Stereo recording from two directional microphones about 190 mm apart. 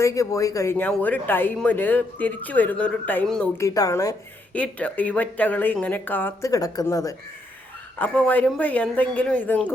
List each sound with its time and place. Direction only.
0.0 s speech: 15° left (ahead or behind)
3.6 s speech: 15° left (ahead or behind)